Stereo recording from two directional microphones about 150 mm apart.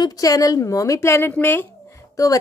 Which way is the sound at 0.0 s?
25° left (ahead or behind).